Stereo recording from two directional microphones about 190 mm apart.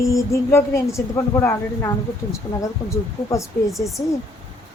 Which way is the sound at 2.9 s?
15° left (ahead or behind).